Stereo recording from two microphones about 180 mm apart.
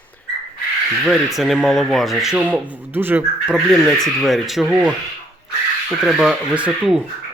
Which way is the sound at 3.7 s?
Centre (ahead or behind).